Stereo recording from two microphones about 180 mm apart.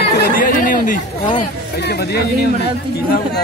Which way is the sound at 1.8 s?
65° left (ahead or behind).